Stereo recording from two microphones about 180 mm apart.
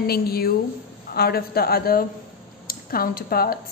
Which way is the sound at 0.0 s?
60° left (ahead or behind).